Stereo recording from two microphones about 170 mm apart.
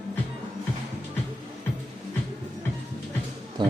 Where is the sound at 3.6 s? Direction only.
25° right (ahead or behind).